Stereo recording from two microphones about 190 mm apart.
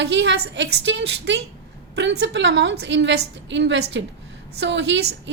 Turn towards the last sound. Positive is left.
turn(degrees=-70)  # may be behind; listen again after turning